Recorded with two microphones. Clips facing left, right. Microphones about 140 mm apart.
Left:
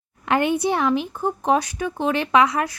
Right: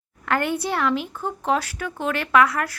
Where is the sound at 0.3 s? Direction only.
20° left (ahead or behind).